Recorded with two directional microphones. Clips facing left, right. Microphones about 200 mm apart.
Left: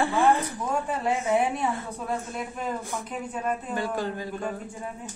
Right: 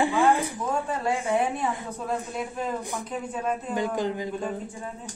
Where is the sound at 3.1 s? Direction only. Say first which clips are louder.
Right 1 dB; 5° left (ahead or behind).